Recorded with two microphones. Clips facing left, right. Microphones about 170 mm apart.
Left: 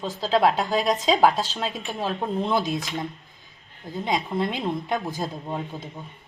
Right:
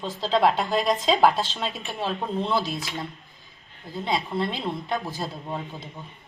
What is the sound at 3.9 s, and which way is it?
Speech, 15° left (ahead or behind).